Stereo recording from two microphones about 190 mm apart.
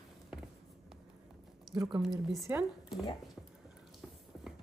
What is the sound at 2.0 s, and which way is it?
Speech, centre (ahead or behind).